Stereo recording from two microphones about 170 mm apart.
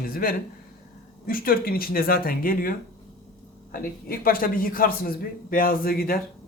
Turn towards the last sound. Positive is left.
turn(degrees=60)  # may be behind; listen again after turning